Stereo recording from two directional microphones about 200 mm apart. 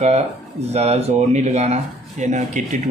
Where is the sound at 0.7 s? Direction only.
30° right (ahead or behind).